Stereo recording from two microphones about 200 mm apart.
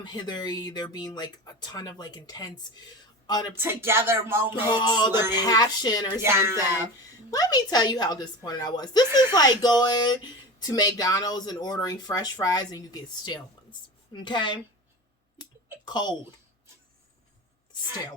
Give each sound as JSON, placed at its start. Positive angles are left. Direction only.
{"t": 0.0, "sound": "speech", "side_deg": 20}
{"t": 3.6, "sound": "music", "side_deg": -10}
{"t": 4.7, "sound": "speech", "side_deg": 20}
{"t": 6.2, "sound": "music", "side_deg": -15}
{"t": 7.3, "sound": "speech", "side_deg": 20}
{"t": 15.8, "sound": "speech", "side_deg": 20}